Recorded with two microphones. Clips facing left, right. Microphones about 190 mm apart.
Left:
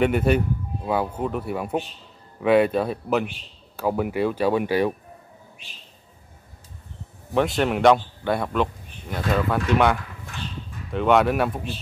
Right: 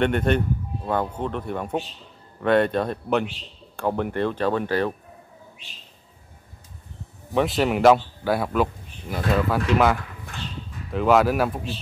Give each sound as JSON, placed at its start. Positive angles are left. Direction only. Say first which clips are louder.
{"t": 0.0, "sound": "a man's voice", "louder": "left 1 dB", "side_deg": 5}
{"t": 7.3, "sound": "a man's voice", "louder": "even", "side_deg": 0}